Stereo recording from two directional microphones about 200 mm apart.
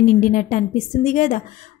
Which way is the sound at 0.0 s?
40° left (ahead or behind).